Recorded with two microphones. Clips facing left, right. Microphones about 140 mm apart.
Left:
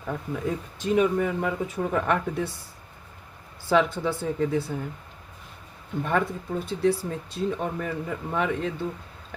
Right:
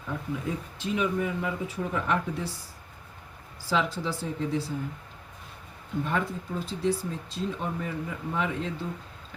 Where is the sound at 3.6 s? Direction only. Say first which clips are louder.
Left 6 dB; 55° left (ahead or behind).